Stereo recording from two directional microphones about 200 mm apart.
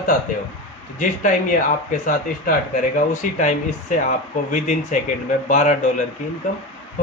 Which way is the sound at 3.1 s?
40° left (ahead or behind).